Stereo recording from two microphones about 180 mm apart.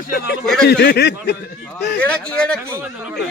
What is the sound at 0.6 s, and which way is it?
Speech, 65° left (ahead or behind).